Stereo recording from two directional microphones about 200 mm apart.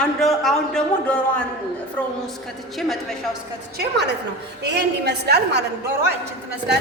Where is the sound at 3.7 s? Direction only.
55° right (ahead or behind).